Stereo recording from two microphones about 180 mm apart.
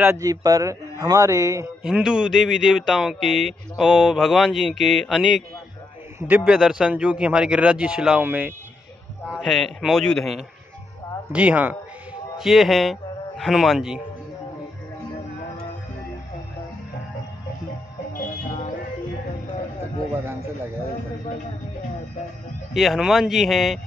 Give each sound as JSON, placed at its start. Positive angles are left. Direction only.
{"t": 0.0, "sound": "a man's voice", "side_deg": -15}
{"t": 1.8, "sound": "speech", "side_deg": -5}
{"t": 9.3, "sound": "a man's voice", "side_deg": 0}
{"t": 18.1, "sound": "music", "side_deg": 45}
{"t": 22.8, "sound": "speech", "side_deg": 0}